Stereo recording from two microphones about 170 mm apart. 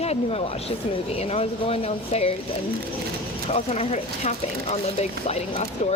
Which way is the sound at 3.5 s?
35° left (ahead or behind).